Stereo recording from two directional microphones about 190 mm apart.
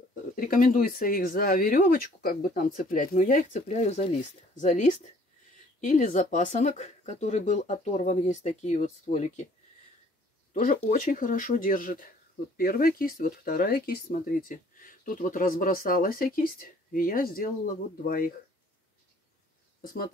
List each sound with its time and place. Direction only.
0.1 s speech: 45° left (ahead or behind)
10.8 s speech: 40° left (ahead or behind)